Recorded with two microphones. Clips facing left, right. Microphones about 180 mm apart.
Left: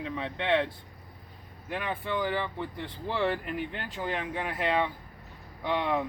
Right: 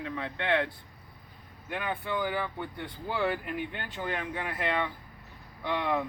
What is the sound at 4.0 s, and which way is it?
Speech, 20° left (ahead or behind).